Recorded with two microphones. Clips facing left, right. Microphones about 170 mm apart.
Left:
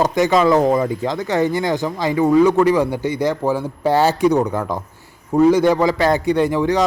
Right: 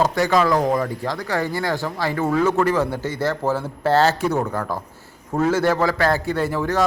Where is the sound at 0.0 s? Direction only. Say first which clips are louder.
Left 3 dB; 20° left (ahead or behind).